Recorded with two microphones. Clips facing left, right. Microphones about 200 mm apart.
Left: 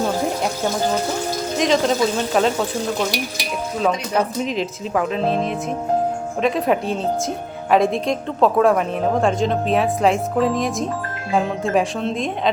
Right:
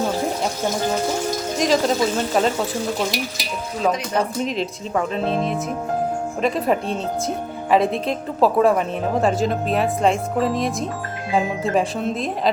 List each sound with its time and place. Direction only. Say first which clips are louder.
1.5 s a woman's voice: left 1 dB; centre (ahead or behind)
3.8 s a woman's voice: even; centre (ahead or behind)